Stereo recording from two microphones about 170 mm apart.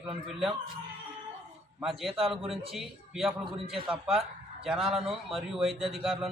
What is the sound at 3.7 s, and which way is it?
A man's voice, centre (ahead or behind).